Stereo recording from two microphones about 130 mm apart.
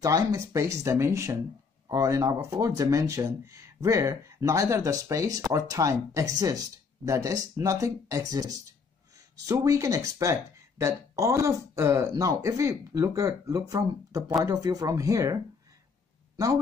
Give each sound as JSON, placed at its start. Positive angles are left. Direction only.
{"t": 0.0, "sound": "speech", "side_deg": -25}
{"t": 9.5, "sound": "speech", "side_deg": -25}